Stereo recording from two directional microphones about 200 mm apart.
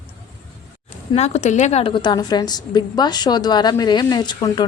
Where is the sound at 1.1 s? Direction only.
35° left (ahead or behind).